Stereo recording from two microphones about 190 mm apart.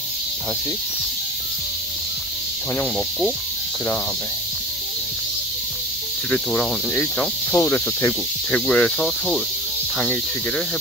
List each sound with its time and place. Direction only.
6.3 s speech: 5° left (ahead or behind)